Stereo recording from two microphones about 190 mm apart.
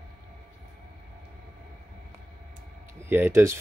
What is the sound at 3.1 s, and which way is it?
Speech, 10° right (ahead or behind).